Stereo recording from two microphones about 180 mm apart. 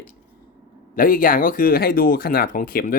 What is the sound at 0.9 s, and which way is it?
Speech, 50° left (ahead or behind).